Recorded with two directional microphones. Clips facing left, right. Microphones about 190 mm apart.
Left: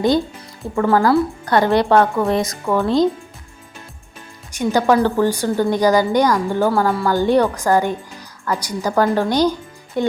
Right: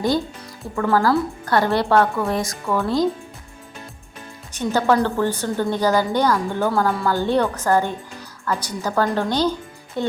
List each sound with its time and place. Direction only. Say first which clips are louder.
0.8 s a woman's voice: left 3 dB; 15° left (ahead or behind)
4.5 s a woman's voice: left 3 dB; 15° left (ahead or behind)